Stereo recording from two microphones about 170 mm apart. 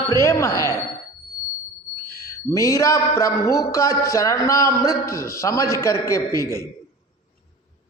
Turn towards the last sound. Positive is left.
turn(degrees=15)  # may be behind; listen again after turning